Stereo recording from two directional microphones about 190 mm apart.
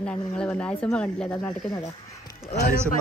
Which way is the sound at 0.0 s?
5° left (ahead or behind).